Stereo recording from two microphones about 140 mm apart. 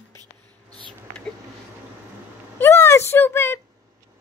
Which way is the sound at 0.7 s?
35° right (ahead or behind).